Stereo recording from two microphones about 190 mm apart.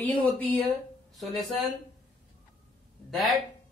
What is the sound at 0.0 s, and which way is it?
Speech, 5° left (ahead or behind).